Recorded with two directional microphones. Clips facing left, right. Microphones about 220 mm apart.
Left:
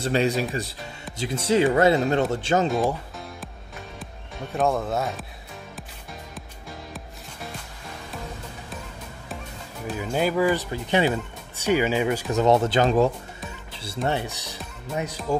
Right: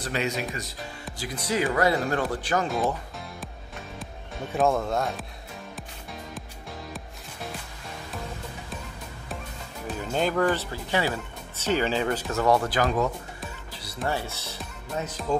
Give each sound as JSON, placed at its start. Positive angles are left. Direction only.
{"t": 0.0, "sound": "speech", "side_deg": 30}
{"t": 4.0, "sound": "speech", "side_deg": 0}
{"t": 9.8, "sound": "speech", "side_deg": 10}